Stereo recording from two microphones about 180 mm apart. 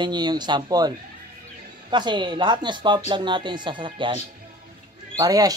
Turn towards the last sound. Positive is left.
turn(degrees=-20)  # may be behind; listen again after turning